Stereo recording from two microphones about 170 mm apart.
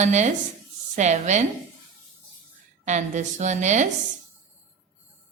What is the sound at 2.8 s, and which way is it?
A woman's voice, 45° right (ahead or behind).